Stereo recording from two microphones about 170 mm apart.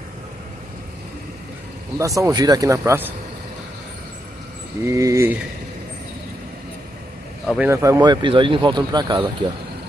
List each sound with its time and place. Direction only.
2.0 s speech: 20° right (ahead or behind)
4.8 s speech: 20° right (ahead or behind)
7.5 s speech: 15° right (ahead or behind)